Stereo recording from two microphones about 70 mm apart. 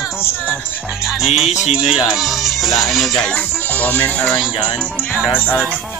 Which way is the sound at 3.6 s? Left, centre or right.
Left.